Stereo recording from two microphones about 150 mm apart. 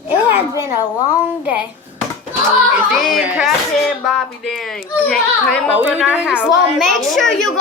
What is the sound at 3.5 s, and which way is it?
A child's voice, centre (ahead or behind).